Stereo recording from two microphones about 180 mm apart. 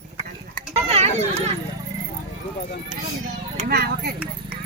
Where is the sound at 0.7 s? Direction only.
35° right (ahead or behind).